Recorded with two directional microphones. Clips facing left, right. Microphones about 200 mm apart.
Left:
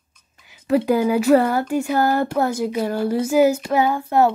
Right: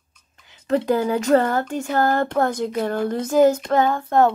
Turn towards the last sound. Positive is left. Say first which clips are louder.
# even
turn(degrees=10)  # may be behind; listen again after turning